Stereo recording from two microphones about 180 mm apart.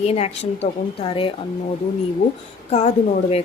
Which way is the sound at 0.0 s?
35° left (ahead or behind).